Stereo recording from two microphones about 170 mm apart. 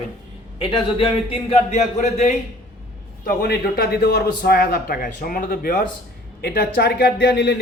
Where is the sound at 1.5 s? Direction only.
40° left (ahead or behind).